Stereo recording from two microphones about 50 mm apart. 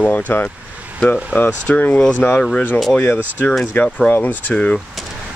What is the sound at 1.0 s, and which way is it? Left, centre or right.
Speech, left.